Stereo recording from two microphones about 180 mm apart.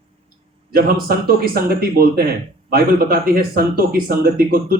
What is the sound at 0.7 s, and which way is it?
Speech, 55° right (ahead or behind).